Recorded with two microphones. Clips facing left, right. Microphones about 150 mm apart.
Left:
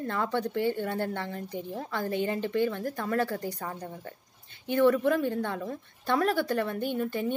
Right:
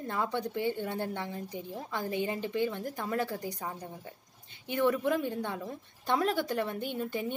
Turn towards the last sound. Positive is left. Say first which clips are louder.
# left 4 dB
turn(degrees=-20)  # may be behind; listen again after turning